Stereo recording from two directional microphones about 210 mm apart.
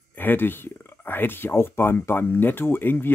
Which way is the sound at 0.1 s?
10° left (ahead or behind).